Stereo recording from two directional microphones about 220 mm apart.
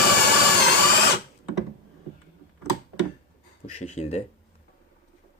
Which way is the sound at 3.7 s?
30° left (ahead or behind).